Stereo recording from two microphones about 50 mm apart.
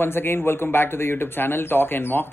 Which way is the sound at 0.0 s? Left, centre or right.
Left.